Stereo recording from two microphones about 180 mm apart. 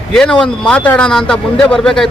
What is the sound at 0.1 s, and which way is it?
A man's voice, 5° left (ahead or behind).